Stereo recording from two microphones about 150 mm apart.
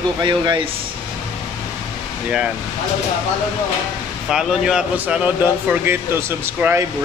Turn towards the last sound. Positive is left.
turn(degrees=-15)  # may be behind; listen again after turning